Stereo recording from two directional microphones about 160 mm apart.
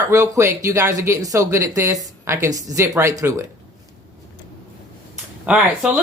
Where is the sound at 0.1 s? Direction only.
20° right (ahead or behind).